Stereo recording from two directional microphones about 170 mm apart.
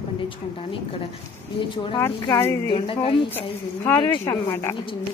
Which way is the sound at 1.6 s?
30° left (ahead or behind).